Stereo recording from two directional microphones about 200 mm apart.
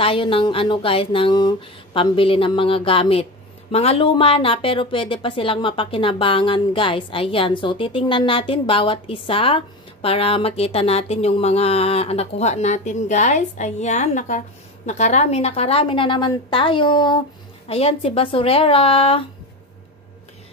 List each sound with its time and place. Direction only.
0.0 s speech: 25° left (ahead or behind)